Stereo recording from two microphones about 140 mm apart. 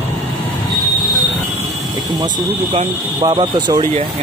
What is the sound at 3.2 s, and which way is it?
Speech, 30° right (ahead or behind).